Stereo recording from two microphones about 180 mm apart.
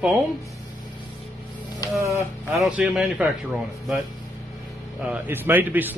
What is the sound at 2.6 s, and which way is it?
A man's voice, 5° right (ahead or behind).